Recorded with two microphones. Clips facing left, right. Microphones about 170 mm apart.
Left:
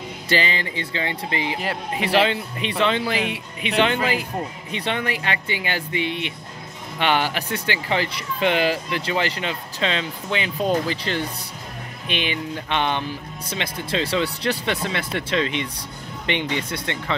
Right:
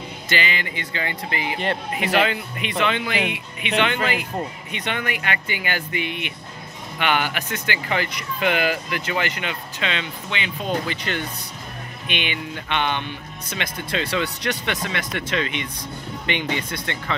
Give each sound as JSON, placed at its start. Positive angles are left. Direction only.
{"t": 0.3, "sound": "speech", "side_deg": 30}